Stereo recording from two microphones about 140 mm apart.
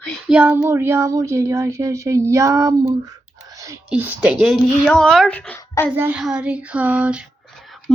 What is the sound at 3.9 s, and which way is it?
A woman's voice, 10° right (ahead or behind).